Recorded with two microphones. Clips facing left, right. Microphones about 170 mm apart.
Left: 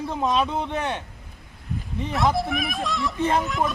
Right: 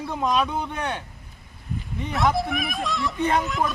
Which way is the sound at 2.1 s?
Centre (ahead or behind).